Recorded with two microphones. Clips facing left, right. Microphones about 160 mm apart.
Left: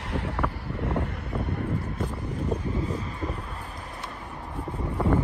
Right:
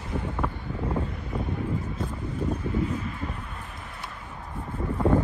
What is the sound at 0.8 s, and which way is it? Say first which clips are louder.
Wind: left 1 dB; 75° left (ahead or behind).